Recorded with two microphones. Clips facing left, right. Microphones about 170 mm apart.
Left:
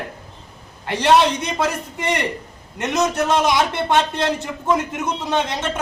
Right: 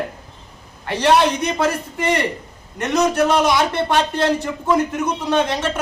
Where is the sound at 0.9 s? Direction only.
20° left (ahead or behind).